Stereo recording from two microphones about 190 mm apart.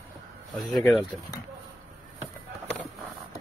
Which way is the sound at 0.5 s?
Centre (ahead or behind).